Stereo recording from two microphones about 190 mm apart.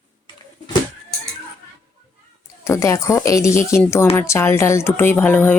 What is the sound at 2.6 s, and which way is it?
Speech, 15° left (ahead or behind).